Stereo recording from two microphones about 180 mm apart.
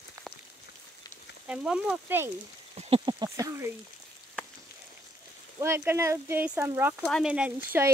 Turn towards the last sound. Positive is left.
turn(degrees=-10)  # may be behind; listen again after turning